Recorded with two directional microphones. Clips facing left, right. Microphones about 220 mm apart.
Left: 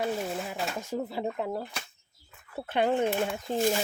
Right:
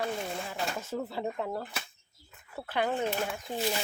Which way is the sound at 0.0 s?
5° left (ahead or behind).